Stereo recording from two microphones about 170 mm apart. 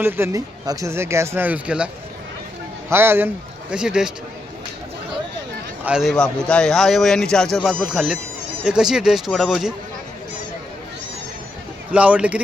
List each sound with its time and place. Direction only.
0.0 s speech: 15° right (ahead or behind)
2.9 s speech: 15° right (ahead or behind)
5.8 s speech: 5° right (ahead or behind)
11.9 s speech: 10° right (ahead or behind)